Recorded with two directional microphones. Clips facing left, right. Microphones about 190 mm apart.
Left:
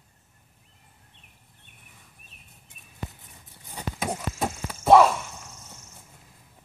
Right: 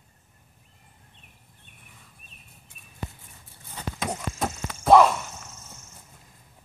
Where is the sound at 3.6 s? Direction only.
15° left (ahead or behind).